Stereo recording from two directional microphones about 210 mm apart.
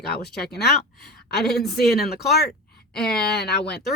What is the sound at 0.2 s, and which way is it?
Speech, 50° left (ahead or behind).